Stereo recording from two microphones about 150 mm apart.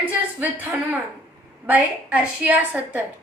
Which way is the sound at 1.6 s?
10° right (ahead or behind).